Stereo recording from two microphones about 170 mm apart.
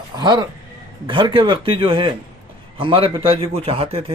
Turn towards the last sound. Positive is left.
turn(degrees=-35)  # may be behind; listen again after turning